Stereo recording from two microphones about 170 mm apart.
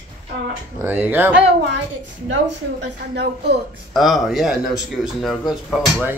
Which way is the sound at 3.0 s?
75° right (ahead or behind).